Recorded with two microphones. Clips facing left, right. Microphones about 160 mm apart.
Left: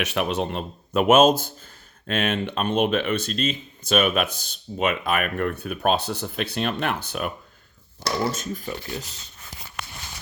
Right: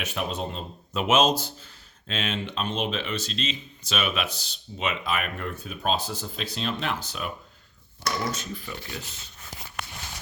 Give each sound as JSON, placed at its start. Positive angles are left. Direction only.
{"t": 0.0, "sound": "speech", "side_deg": 75}
{"t": 8.3, "sound": "speech", "side_deg": 45}
{"t": 9.8, "sound": "a sound", "side_deg": -55}